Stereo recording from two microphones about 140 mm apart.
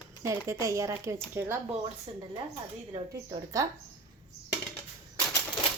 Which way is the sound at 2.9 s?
30° right (ahead or behind).